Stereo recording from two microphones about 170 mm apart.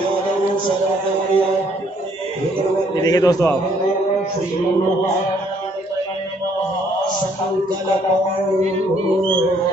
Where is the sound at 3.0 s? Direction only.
20° left (ahead or behind).